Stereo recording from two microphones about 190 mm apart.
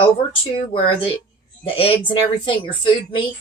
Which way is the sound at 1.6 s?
30° left (ahead or behind).